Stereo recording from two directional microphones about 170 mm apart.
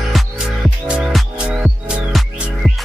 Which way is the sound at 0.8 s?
5° right (ahead or behind).